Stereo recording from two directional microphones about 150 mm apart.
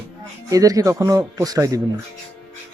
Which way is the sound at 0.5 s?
20° right (ahead or behind).